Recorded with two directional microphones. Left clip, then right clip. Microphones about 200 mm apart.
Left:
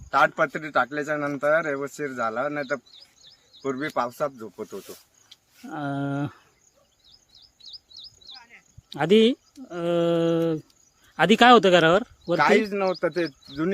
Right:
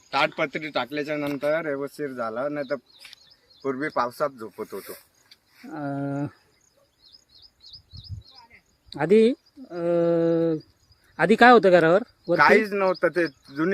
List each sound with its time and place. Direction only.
0.1 s a man's voice: centre (ahead or behind)
7.6 s chirp: 40° left (ahead or behind)
8.9 s speech: centre (ahead or behind)